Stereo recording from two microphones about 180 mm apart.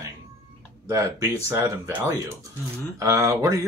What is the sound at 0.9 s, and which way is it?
Speech, 15° right (ahead or behind).